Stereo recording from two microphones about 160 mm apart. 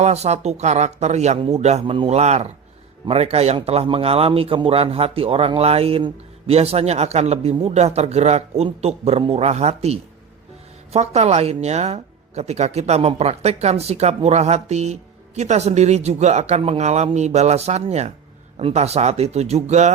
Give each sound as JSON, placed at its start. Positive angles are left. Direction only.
{"t": 0.0, "sound": "a woman's voice", "side_deg": -45}